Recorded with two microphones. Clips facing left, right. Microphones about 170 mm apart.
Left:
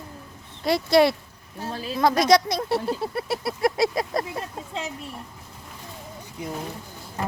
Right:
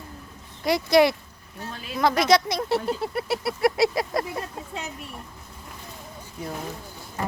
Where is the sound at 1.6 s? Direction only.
35° left (ahead or behind).